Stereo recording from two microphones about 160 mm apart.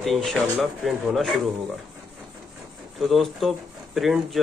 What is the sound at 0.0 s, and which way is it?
Speech, centre (ahead or behind).